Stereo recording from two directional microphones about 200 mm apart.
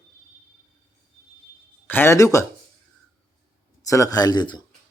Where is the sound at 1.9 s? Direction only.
10° left (ahead or behind).